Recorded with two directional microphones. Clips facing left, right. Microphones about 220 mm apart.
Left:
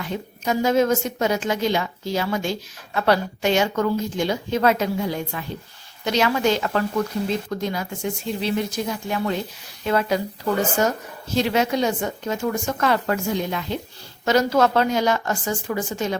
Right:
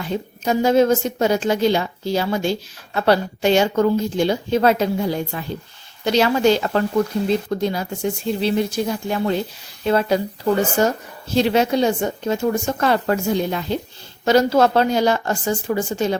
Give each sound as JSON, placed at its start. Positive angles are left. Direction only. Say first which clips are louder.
{"t": 0.0, "sound": "a woman's voice", "louder": "right 4 dB", "side_deg": -30}
{"t": 11.3, "sound": "a woman's voice", "louder": "right 4 dB", "side_deg": -30}